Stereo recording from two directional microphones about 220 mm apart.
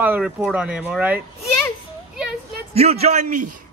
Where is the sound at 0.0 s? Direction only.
5° right (ahead or behind).